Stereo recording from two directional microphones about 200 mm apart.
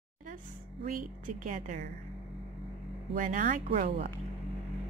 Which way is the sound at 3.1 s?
40° right (ahead or behind).